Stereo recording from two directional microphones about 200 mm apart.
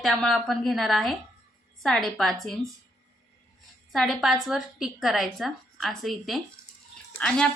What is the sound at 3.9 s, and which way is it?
A woman's voice, centre (ahead or behind).